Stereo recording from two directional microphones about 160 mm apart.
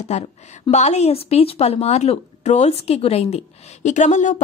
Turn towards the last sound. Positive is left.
turn(degrees=50)  # may be behind; listen again after turning